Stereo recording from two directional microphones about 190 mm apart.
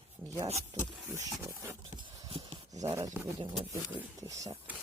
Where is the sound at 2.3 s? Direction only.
25° right (ahead or behind).